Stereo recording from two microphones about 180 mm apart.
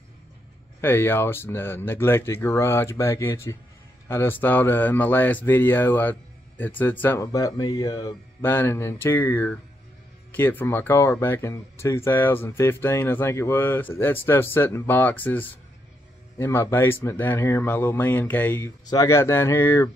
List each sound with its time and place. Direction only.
0.7 s speech: 10° left (ahead or behind)